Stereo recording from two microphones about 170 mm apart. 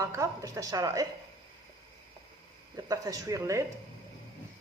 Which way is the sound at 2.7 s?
20° right (ahead or behind).